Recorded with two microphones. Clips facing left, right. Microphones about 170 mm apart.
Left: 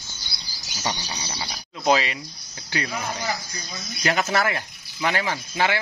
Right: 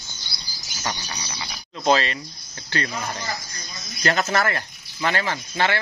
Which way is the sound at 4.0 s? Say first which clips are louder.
Right 1 dB; 10° left (ahead or behind).